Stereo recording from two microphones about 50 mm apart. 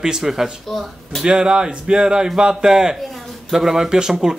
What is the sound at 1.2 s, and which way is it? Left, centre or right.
Speech, centre.